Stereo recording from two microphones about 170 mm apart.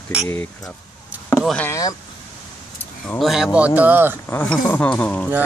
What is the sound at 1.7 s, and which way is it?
Speech, 20° left (ahead or behind).